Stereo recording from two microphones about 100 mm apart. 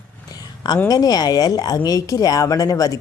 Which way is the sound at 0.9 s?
40° left (ahead or behind).